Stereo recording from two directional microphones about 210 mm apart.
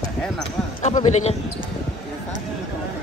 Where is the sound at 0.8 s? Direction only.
30° left (ahead or behind).